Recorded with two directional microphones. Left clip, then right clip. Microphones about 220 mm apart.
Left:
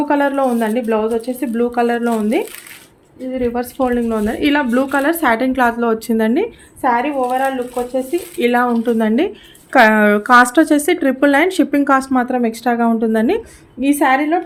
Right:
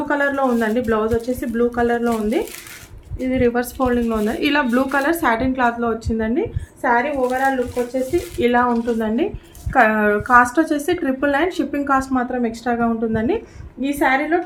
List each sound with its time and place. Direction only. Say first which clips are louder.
0.1 s speech: left 1 dB; 30° left (ahead or behind)
3.3 s a woman's voice: right 1 dB; 5° left (ahead or behind)
3.6 s speech: left 2 dB; 20° left (ahead or behind); by 14.4 s 35° left (ahead or behind)